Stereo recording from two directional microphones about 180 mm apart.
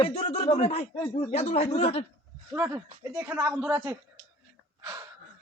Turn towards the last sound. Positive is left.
turn(degrees=-20)  # may be behind; listen again after turning